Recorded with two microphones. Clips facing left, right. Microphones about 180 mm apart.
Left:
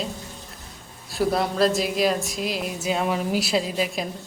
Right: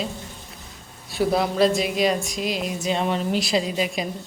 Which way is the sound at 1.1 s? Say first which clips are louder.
Right 1 dB; centre (ahead or behind).